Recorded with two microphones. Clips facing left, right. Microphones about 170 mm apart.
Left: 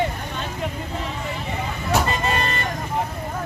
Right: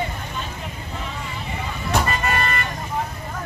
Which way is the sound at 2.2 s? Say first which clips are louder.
Even; 20° left (ahead or behind).